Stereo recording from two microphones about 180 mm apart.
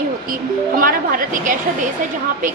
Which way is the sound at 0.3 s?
50° right (ahead or behind).